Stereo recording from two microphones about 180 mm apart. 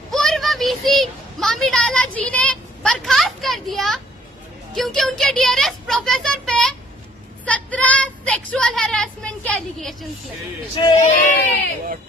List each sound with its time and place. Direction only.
0.1 s a sound: centre (ahead or behind)
4.7 s speech: centre (ahead or behind)
7.4 s child singing: 5° left (ahead or behind)
11.0 s speech: 45° left (ahead or behind)